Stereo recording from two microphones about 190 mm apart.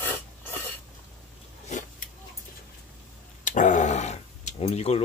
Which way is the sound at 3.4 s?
40° left (ahead or behind).